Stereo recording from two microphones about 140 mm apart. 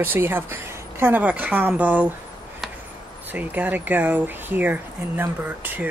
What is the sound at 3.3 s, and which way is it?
Speech, 10° right (ahead or behind).